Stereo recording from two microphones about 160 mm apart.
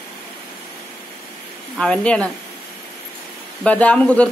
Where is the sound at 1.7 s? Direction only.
5° left (ahead or behind).